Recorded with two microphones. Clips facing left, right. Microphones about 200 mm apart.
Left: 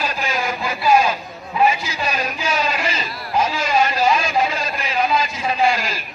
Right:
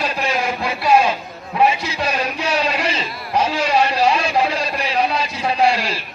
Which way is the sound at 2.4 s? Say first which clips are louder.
Right 1 dB; 30° right (ahead or behind).